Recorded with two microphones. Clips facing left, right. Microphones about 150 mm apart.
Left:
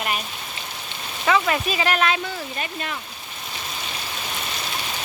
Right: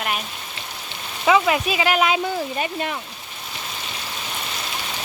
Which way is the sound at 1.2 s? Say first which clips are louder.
Right 3 dB; 10° right (ahead or behind).